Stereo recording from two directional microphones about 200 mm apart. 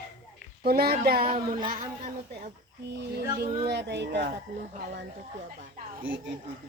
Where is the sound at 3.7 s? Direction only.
60° right (ahead or behind).